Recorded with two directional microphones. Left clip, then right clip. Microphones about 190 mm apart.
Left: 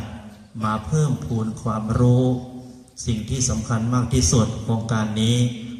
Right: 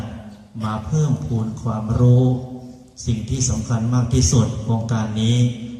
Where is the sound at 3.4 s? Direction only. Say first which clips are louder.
Even; 10° left (ahead or behind).